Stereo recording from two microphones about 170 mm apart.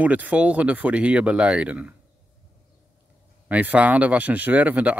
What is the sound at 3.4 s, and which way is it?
Speech, 10° right (ahead or behind).